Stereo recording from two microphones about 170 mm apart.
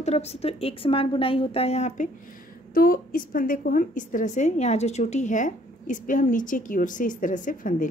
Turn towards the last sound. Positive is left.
turn(degrees=50)  # may be behind; listen again after turning